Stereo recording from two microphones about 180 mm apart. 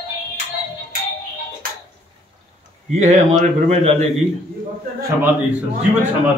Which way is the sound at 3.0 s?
40° right (ahead or behind).